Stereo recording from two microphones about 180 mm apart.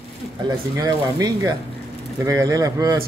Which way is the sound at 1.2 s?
20° right (ahead or behind).